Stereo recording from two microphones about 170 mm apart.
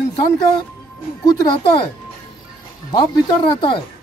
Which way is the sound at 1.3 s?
25° left (ahead or behind).